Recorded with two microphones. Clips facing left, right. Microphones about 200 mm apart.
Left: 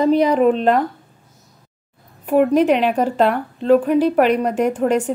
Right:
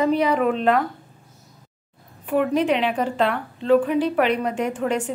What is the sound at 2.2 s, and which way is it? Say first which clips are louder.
A woman's voice: left 6 dB; 45° left (ahead or behind).